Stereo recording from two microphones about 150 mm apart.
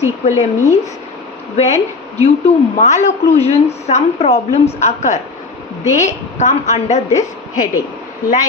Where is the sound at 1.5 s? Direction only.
45° left (ahead or behind).